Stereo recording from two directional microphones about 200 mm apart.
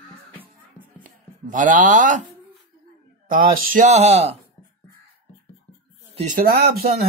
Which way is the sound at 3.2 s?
45° right (ahead or behind).